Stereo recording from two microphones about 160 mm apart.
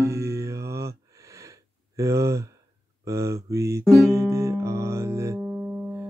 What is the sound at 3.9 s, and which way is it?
Music, 20° right (ahead or behind).